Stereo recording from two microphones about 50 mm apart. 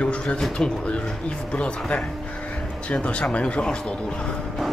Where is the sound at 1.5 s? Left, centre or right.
Left.